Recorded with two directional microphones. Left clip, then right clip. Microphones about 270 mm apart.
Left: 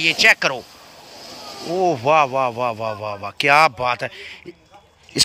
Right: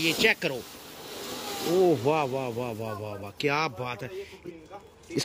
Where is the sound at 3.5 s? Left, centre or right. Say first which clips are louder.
Left 17 dB; left.